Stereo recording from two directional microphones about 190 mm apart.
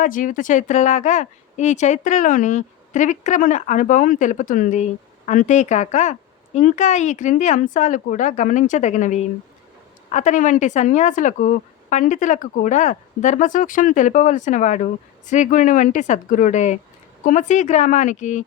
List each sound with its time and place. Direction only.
0.0 s speech: 45° left (ahead or behind)